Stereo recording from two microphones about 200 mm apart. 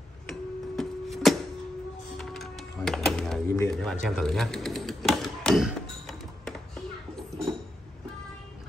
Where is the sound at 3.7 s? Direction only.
Centre (ahead or behind).